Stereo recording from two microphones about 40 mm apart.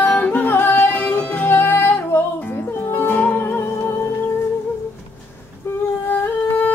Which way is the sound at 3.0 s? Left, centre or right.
Left.